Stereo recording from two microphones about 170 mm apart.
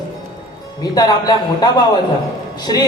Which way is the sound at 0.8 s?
25° left (ahead or behind).